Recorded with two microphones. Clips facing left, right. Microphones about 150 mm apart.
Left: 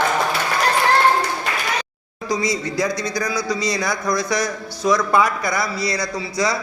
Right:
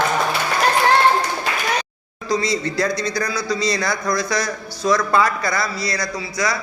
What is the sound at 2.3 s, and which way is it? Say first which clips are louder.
A man's voice: right 1 dB; 15° left (ahead or behind).